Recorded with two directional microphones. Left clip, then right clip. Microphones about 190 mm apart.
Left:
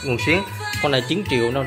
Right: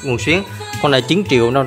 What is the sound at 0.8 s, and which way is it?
Speech, 35° right (ahead or behind).